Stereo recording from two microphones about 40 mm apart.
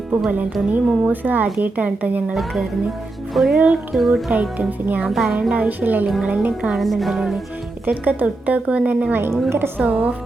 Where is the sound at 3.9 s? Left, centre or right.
Centre.